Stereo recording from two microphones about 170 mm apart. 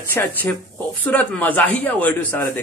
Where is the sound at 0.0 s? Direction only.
10° left (ahead or behind).